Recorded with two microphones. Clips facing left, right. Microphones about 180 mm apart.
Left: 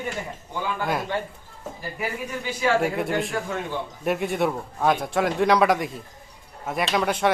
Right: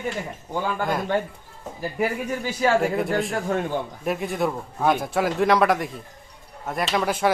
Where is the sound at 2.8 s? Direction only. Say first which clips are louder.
Right 1 dB; centre (ahead or behind).